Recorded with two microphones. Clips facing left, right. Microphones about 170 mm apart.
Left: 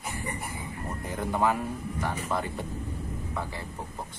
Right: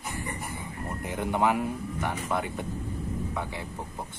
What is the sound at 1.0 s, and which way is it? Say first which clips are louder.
Speech: right 1 dB; 15° right (ahead or behind).